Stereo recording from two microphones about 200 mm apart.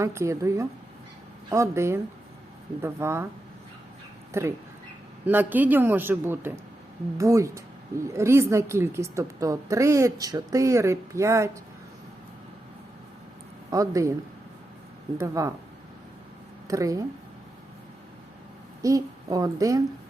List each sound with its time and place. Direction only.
0.0 s a woman's voice: 15° right (ahead or behind)
4.3 s a woman's voice: 10° right (ahead or behind)
13.7 s speech: 15° right (ahead or behind)
15.2 s a woman's voice: 15° right (ahead or behind)
16.6 s a woman's voice: 15° right (ahead or behind)
18.8 s a woman's voice: 15° right (ahead or behind)